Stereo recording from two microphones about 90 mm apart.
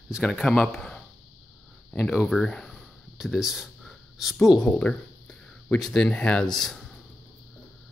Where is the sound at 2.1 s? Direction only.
Centre (ahead or behind).